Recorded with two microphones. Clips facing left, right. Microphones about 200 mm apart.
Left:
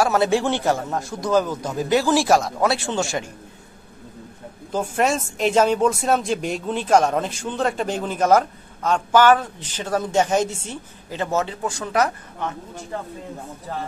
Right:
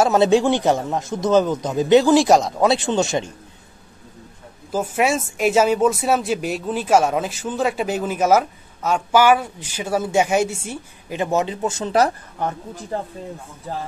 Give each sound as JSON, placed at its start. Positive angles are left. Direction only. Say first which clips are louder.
{"t": 0.0, "sound": "a man's voice", "louder": "right 4 dB", "side_deg": -20}
{"t": 4.7, "sound": "speech", "louder": "right 1 dB", "side_deg": -5}